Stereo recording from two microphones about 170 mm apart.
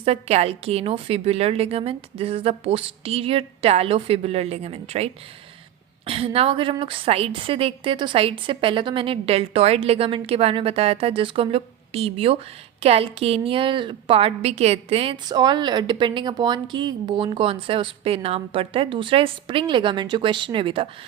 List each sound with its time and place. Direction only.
0.0 s a woman's voice: 35° right (ahead or behind)